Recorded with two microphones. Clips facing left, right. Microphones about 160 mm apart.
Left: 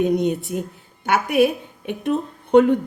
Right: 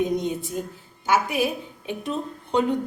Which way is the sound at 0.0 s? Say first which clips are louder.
Left 5 dB; 65° left (ahead or behind).